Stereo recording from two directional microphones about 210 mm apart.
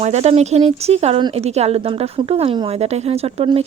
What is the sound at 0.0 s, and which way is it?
A woman's voice, 30° right (ahead or behind).